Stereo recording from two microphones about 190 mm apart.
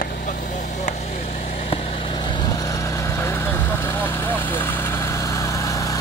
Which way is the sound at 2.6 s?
15° left (ahead or behind).